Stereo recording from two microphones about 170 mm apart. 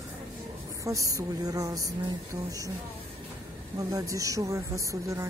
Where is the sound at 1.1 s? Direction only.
20° right (ahead or behind).